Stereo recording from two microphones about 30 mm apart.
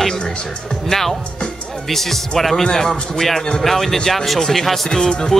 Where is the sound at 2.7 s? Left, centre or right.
Centre.